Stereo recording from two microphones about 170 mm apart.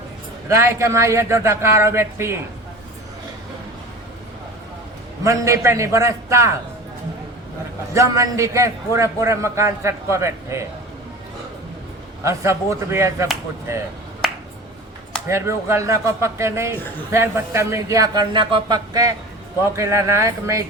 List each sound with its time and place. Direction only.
0.4 s a man's voice: 15° right (ahead or behind)
5.2 s a man's voice: 20° right (ahead or behind)
7.9 s a man's voice: 20° right (ahead or behind)
12.2 s a man's voice: 15° right (ahead or behind)
15.3 s a man's voice: 15° right (ahead or behind)